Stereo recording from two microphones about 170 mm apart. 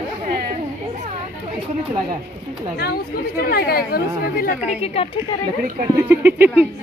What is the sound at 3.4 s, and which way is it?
Speech, 65° left (ahead or behind).